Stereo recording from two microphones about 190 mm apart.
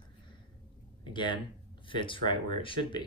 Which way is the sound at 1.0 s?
25° left (ahead or behind).